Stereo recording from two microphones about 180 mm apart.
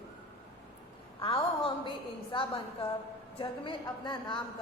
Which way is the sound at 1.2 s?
30° left (ahead or behind).